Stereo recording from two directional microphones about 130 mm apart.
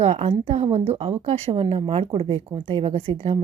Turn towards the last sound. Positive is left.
turn(degrees=-50)  # may be behind; listen again after turning